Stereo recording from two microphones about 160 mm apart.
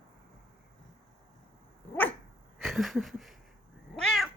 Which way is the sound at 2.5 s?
Centre (ahead or behind).